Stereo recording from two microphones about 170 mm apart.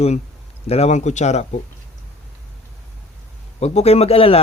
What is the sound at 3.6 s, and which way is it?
Speech, 40° left (ahead or behind).